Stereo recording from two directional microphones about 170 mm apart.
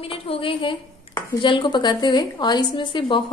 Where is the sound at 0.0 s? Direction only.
35° left (ahead or behind).